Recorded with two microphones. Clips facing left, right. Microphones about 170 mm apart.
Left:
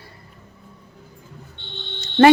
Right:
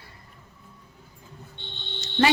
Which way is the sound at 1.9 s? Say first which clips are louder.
Left 10 dB; 55° left (ahead or behind).